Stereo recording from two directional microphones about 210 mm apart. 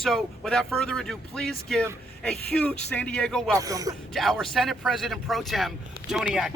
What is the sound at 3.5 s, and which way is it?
Speech, 15° right (ahead or behind).